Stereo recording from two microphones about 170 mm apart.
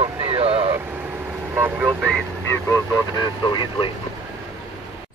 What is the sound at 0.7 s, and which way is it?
Vehicle, 10° right (ahead or behind).